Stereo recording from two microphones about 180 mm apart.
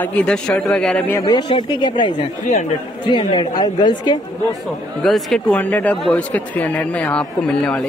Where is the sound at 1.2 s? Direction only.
25° left (ahead or behind).